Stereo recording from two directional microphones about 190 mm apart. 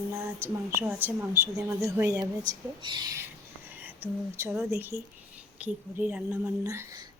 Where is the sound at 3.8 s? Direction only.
10° right (ahead or behind).